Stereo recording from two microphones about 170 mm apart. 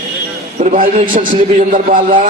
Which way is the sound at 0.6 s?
50° right (ahead or behind).